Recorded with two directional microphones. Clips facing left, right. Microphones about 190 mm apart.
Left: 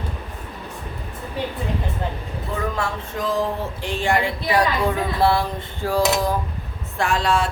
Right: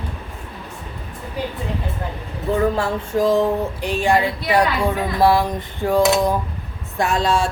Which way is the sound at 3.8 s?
20° right (ahead or behind).